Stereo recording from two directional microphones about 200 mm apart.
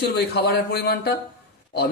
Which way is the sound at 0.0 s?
55° left (ahead or behind).